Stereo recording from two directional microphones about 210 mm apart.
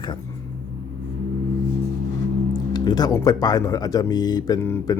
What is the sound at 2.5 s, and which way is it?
Speech, 20° left (ahead or behind).